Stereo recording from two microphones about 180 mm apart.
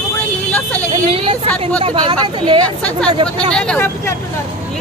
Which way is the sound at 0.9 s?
30° right (ahead or behind).